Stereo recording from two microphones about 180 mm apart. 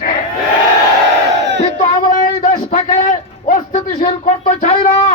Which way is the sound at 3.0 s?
45° left (ahead or behind).